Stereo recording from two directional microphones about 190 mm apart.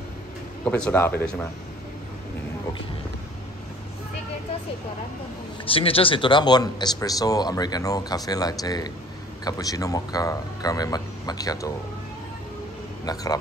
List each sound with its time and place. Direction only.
0.7 s speech: 5° left (ahead or behind)
5.7 s speech: 30° left (ahead or behind)
13.0 s speech: 20° left (ahead or behind)